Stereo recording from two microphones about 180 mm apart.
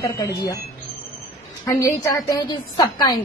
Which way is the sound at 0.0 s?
20° left (ahead or behind).